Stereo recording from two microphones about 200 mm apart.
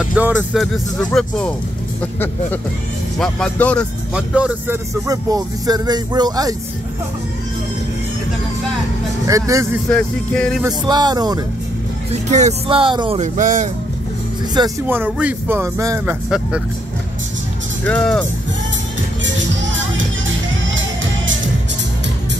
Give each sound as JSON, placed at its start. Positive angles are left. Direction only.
{"t": 0.0, "sound": "speech", "side_deg": -5}
{"t": 3.2, "sound": "speech", "side_deg": 5}
{"t": 4.1, "sound": "speech", "side_deg": -5}
{"t": 5.0, "sound": "speech", "side_deg": -20}
{"t": 9.3, "sound": "speech", "side_deg": -15}
{"t": 9.8, "sound": "speech", "side_deg": 5}
{"t": 10.6, "sound": "speech", "side_deg": -20}
{"t": 12.1, "sound": "speech", "side_deg": -35}
{"t": 13.2, "sound": "speech", "side_deg": -40}
{"t": 14.9, "sound": "speech", "side_deg": -10}
{"t": 16.3, "sound": "speech", "side_deg": 0}
{"t": 17.8, "sound": "speech", "side_deg": 5}
{"t": 19.2, "sound": "music", "side_deg": -65}